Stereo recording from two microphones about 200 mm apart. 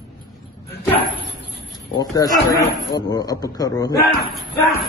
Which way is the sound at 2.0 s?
20° left (ahead or behind).